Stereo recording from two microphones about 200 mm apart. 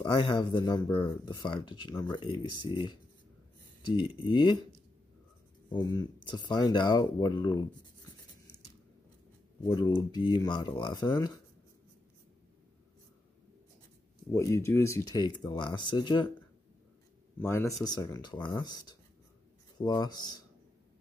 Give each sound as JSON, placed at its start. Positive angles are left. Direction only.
{"t": 0.0, "sound": "speech", "side_deg": 25}
{"t": 4.2, "sound": "speech", "side_deg": 25}
{"t": 5.7, "sound": "speech", "side_deg": 20}
{"t": 9.6, "sound": "speech", "side_deg": 20}
{"t": 14.3, "sound": "speech", "side_deg": 15}
{"t": 17.4, "sound": "speech", "side_deg": 10}